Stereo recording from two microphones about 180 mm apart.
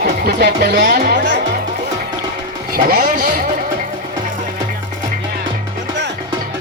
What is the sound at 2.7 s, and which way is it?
Speech, 55° right (ahead or behind).